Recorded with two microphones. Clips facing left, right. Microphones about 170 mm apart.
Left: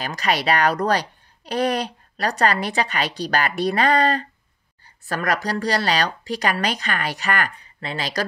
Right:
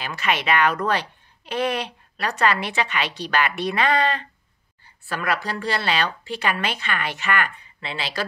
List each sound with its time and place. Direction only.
0.0 s a woman's voice: 40° left (ahead or behind)